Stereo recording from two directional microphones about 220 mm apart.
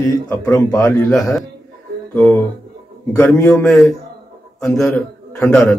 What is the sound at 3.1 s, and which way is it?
A man's voice, 10° left (ahead or behind).